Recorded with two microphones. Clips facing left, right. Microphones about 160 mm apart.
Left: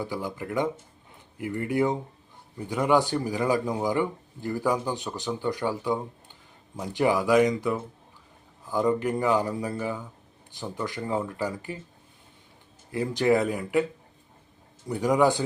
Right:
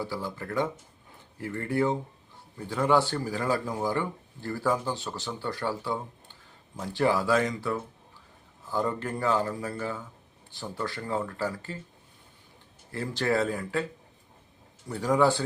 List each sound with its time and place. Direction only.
0.0 s speech: 15° left (ahead or behind)
12.9 s speech: 15° left (ahead or behind)
14.8 s speech: 15° left (ahead or behind)